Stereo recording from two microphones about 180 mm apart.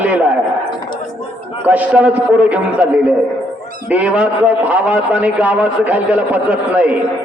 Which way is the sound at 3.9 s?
5° right (ahead or behind).